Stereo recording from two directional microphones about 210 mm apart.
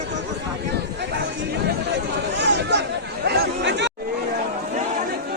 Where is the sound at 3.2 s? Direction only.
50° right (ahead or behind).